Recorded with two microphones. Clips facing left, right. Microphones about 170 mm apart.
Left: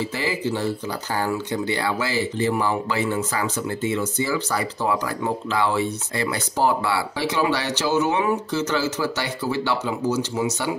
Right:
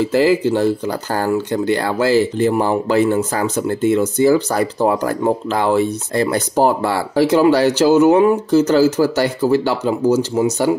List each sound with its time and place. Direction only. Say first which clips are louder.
0.1 s speech: right 11 dB; 50° right (ahead or behind)